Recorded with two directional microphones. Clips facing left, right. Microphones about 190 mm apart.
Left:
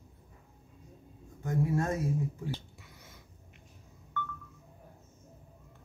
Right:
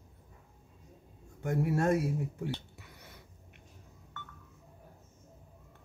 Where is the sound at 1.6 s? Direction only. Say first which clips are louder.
Right 3 dB; 70° right (ahead or behind).